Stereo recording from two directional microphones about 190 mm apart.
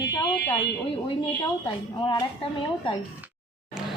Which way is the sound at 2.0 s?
25° left (ahead or behind).